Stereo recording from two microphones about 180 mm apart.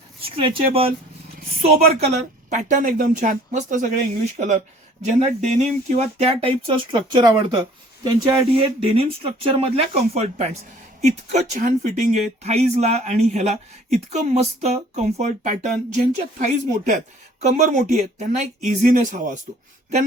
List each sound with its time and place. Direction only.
0.2 s speech: 30° right (ahead or behind)
2.0 s speech: 40° right (ahead or behind)